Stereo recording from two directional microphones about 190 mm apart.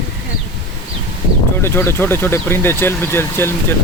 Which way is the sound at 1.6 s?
10° left (ahead or behind).